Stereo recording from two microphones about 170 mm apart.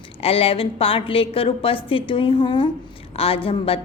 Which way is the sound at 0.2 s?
35° left (ahead or behind).